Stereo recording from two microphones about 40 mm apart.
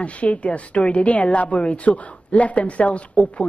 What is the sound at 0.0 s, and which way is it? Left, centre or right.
A woman's voice, left.